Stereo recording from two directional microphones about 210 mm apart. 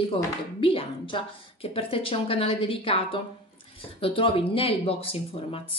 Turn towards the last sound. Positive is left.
turn(degrees=25)  # may be behind; listen again after turning